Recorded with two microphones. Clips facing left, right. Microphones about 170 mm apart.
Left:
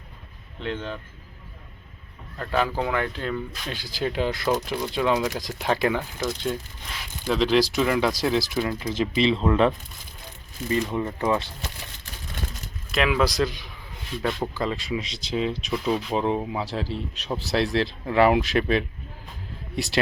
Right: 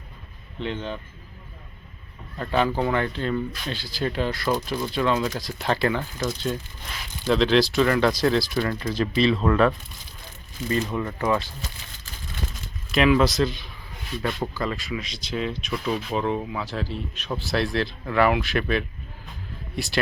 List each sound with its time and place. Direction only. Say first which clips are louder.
0.6 s speech: right 1 dB; centre (ahead or behind)
2.4 s speech: right 2 dB; centre (ahead or behind)
3.8 s speech: left 1 dB; 15° left (ahead or behind)
7.3 s speech: right 1 dB; 10° left (ahead or behind); by 11.4 s 25° left (ahead or behind)
12.9 s speech: right 4 dB; centre (ahead or behind)
14.2 s speech: left 1 dB; 5° right (ahead or behind)
14.6 s speech: left 1 dB; 25° left (ahead or behind)